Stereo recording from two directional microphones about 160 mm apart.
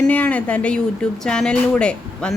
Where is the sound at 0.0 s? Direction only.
10° left (ahead or behind).